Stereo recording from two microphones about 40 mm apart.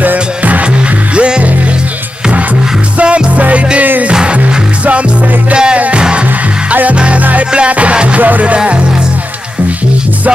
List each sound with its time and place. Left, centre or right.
0.0 s music: right
1.1 s music: right
3.0 s music: right
4.1 s music: right
4.4 s music: right
5.5 s music: right
6.7 s music: right
8.2 s music: right